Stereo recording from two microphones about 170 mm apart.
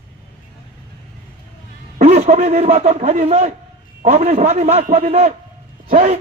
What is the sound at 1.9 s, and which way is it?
A man's voice, 40° right (ahead or behind).